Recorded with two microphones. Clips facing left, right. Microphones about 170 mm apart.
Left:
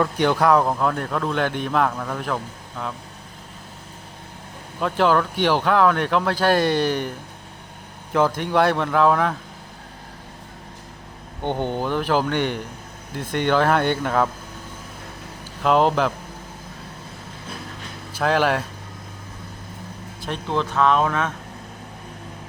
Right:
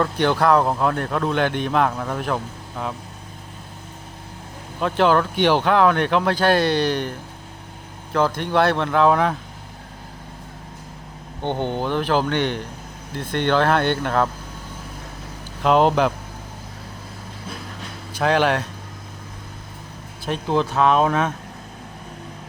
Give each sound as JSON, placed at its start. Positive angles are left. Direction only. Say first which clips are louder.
{"t": 0.0, "sound": "speech", "louder": "even", "side_deg": 5}
{"t": 0.6, "sound": "speech", "louder": "right 1 dB", "side_deg": -5}
{"t": 4.8, "sound": "speech", "louder": "right 1 dB", "side_deg": 0}
{"t": 8.1, "sound": "speech", "louder": "even", "side_deg": 10}
{"t": 11.4, "sound": "speech", "louder": "even", "side_deg": 10}
{"t": 15.6, "sound": "speech", "louder": "right 2 dB", "side_deg": 0}
{"t": 18.2, "sound": "speech", "louder": "right 1 dB", "side_deg": 0}
{"t": 20.3, "sound": "speech", "louder": "right 3 dB", "side_deg": -5}